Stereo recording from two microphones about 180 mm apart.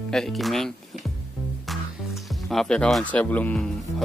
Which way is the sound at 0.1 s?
Centre (ahead or behind).